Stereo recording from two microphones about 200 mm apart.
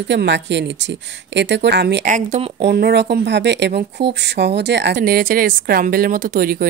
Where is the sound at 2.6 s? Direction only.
55° right (ahead or behind).